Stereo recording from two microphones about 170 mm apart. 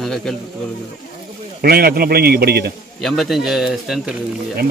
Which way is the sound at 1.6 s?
65° right (ahead or behind).